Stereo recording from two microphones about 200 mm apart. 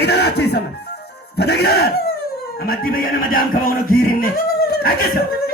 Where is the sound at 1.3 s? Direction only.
55° left (ahead or behind).